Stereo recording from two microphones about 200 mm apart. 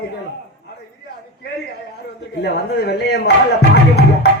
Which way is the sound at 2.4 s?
55° left (ahead or behind).